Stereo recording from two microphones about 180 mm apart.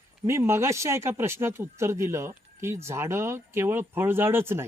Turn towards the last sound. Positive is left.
turn(degrees=-15)  # may be behind; listen again after turning